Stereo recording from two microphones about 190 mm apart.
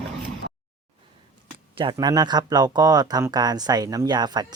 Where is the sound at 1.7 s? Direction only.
25° right (ahead or behind).